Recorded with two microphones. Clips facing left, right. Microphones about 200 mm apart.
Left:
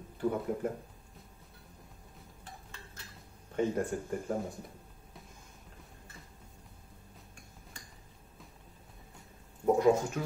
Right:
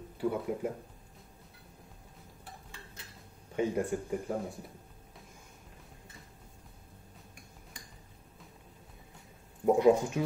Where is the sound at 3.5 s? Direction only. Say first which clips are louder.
Even; 10° right (ahead or behind).